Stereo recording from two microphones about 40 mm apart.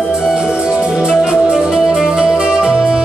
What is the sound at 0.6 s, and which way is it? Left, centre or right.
Music, right.